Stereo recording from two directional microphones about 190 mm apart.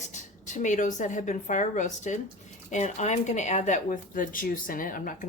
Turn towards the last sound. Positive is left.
turn(degrees=45)  # may be behind; listen again after turning